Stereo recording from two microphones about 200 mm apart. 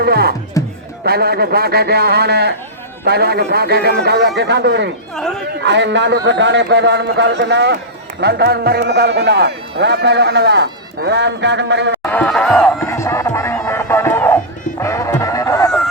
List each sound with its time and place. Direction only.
0.0 s a man's voice: 50° right (ahead or behind)
0.6 s music: 15° left (ahead or behind)
1.0 s a man's voice: 50° right (ahead or behind)
12.0 s music: 5° left (ahead or behind)